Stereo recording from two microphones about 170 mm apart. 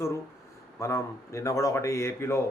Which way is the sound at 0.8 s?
15° left (ahead or behind).